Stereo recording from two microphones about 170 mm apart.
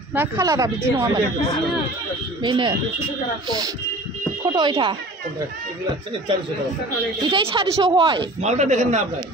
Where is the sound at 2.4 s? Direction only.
25° right (ahead or behind).